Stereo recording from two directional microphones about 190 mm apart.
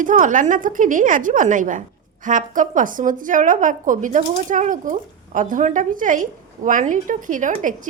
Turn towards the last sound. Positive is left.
turn(degrees=-45)  # may be behind; listen again after turning